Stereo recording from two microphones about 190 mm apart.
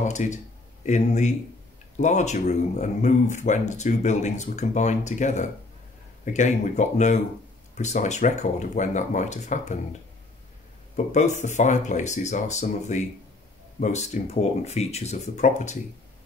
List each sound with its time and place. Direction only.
0.0 s speech: 40° left (ahead or behind)
11.0 s speech: 40° left (ahead or behind)